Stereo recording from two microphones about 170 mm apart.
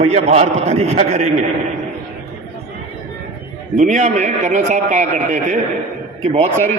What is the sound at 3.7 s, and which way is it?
A man's voice, 50° right (ahead or behind).